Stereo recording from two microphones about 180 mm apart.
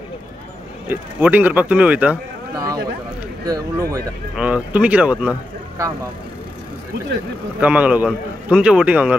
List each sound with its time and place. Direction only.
0.8 s speech: 10° right (ahead or behind)
2.5 s a sound: 20° right (ahead or behind)
3.4 s speech: 20° right (ahead or behind)
4.4 s speech: 5° right (ahead or behind)
7.6 s speech: 10° right (ahead or behind)